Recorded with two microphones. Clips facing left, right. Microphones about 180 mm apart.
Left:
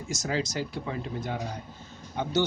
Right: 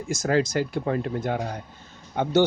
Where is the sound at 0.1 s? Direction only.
55° right (ahead or behind).